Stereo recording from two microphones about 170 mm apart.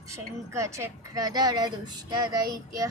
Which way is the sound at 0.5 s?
15° right (ahead or behind).